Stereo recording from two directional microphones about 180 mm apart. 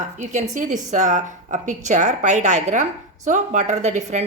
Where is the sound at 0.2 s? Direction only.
45° right (ahead or behind).